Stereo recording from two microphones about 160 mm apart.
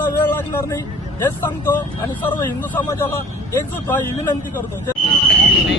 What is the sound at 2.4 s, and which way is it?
Speech, 15° left (ahead or behind).